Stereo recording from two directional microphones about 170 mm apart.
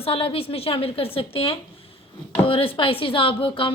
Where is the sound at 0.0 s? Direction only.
35° left (ahead or behind).